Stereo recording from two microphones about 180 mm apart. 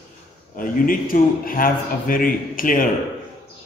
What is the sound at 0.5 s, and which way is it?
Speech, 50° left (ahead or behind).